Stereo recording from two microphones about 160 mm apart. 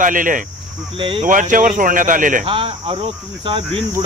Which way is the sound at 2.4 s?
35° right (ahead or behind).